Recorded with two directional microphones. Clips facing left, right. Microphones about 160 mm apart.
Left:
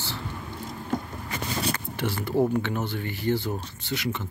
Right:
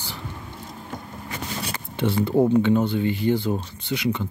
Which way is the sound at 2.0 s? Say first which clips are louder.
Right 5 dB; 20° right (ahead or behind).